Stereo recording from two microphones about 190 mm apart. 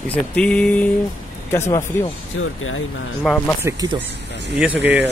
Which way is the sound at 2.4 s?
90° left.